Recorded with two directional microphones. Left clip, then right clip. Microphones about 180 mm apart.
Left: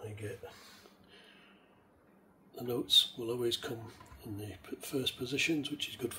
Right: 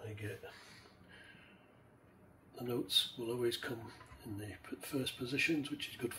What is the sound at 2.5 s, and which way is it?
Speech, 25° left (ahead or behind).